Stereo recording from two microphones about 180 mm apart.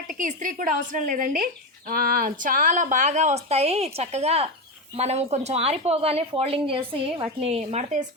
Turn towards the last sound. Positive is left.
turn(degrees=-35)  # may be behind; listen again after turning